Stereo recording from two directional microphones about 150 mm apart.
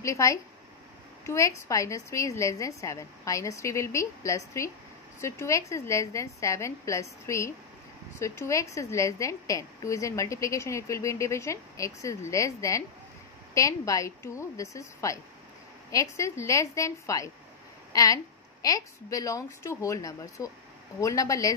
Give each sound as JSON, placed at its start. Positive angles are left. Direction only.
{"t": 0.0, "sound": "a woman's voice", "side_deg": 20}